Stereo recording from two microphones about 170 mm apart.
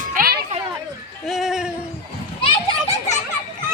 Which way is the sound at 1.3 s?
Centre (ahead or behind).